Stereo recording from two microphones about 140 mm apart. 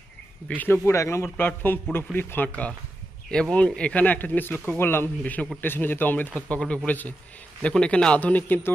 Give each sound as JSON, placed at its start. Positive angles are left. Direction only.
{"t": 0.6, "sound": "speech", "side_deg": 15}